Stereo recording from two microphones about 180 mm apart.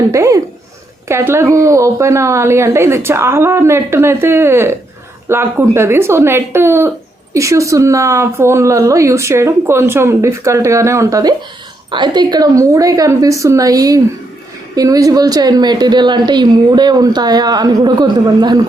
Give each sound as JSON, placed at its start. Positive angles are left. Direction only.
{"t": 0.1, "sound": "a woman's voice", "side_deg": -15}